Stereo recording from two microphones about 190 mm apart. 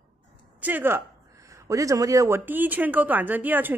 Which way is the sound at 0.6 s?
10° right (ahead or behind).